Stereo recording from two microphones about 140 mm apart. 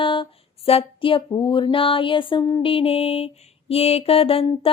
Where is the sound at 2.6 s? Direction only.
40° left (ahead or behind).